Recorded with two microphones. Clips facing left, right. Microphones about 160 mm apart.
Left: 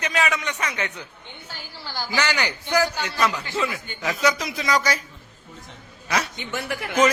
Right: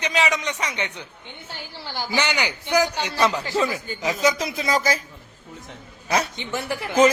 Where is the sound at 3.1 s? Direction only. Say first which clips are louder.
Right 4 dB; 30° right (ahead or behind).